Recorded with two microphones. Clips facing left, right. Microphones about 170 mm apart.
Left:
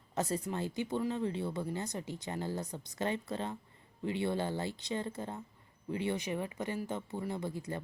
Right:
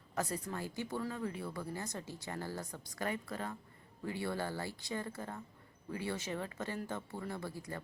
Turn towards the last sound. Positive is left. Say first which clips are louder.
# left 5 dB
turn(degrees=20)  # may be behind; listen again after turning